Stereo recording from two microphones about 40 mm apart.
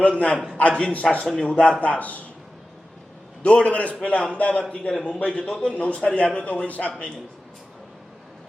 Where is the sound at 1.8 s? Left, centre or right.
Left.